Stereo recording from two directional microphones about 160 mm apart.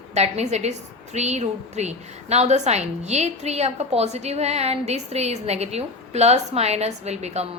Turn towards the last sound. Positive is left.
turn(degrees=-45)  # may be behind; listen again after turning